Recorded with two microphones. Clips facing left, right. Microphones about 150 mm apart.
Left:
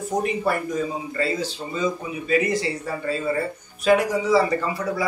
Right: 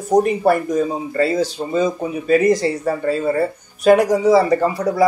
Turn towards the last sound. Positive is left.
turn(degrees=-40)  # may be behind; listen again after turning